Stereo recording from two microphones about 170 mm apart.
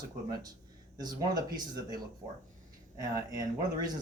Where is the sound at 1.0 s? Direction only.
25° right (ahead or behind).